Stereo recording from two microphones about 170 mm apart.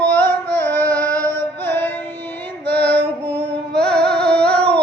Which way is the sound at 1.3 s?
10° left (ahead or behind).